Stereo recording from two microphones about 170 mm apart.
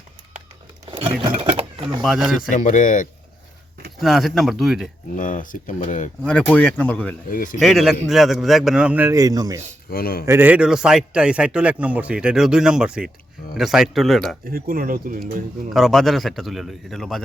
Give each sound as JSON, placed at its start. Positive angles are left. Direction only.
{"t": 0.9, "sound": "a sound", "side_deg": -35}
{"t": 2.0, "sound": "speech", "side_deg": 0}
{"t": 2.5, "sound": "speech", "side_deg": 50}
{"t": 3.9, "sound": "a man's voice", "side_deg": 0}
{"t": 5.1, "sound": "speech", "side_deg": 50}
{"t": 6.2, "sound": "speech", "side_deg": 5}
{"t": 7.3, "sound": "speech", "side_deg": 55}
{"t": 7.6, "sound": "a man's voice", "side_deg": 0}
{"t": 9.9, "sound": "speech", "side_deg": 60}
{"t": 10.2, "sound": "a man's voice", "side_deg": -10}
{"t": 14.4, "sound": "speech", "side_deg": -60}
{"t": 15.7, "sound": "a man's voice", "side_deg": 0}